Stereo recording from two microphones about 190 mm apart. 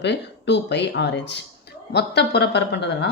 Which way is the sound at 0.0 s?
65° left (ahead or behind).